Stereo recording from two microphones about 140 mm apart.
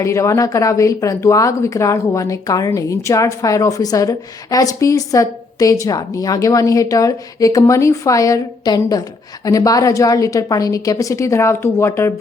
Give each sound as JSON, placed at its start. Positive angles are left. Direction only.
{"t": 0.0, "sound": "speech", "side_deg": 20}